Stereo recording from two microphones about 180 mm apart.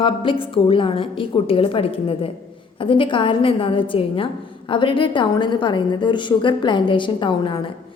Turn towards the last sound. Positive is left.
turn(degrees=30)  # may be behind; listen again after turning